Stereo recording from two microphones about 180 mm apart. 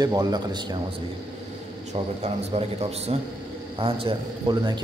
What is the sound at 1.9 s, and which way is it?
A man's voice, 35° right (ahead or behind).